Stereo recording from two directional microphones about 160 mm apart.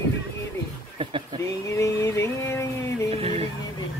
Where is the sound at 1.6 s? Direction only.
20° left (ahead or behind).